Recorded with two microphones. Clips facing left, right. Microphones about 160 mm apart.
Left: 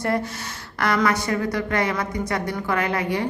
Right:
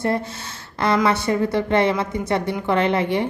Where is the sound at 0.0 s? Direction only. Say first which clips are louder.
Right 1 dB; 25° right (ahead or behind).